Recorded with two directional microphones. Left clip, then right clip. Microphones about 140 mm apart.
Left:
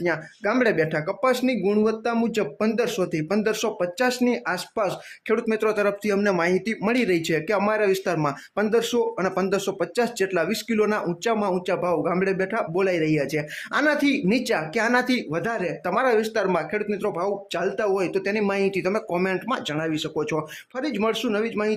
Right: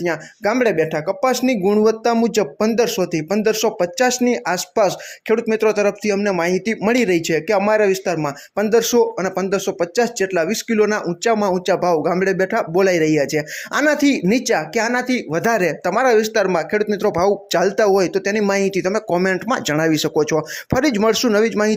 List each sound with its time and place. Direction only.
0.0 s speech: 25° right (ahead or behind)
5.3 s speech: 25° right (ahead or behind)
9.1 s speech: 20° right (ahead or behind)
15.3 s speech: 45° right (ahead or behind)
15.8 s speech: 30° right (ahead or behind)
21.1 s speech: 40° right (ahead or behind)